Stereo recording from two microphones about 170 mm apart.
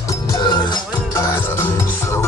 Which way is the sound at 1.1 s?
15° left (ahead or behind).